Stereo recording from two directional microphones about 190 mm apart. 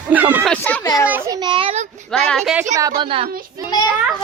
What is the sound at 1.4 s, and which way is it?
Speech, 25° right (ahead or behind).